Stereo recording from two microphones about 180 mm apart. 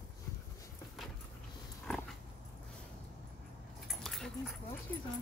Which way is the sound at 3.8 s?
Centre (ahead or behind).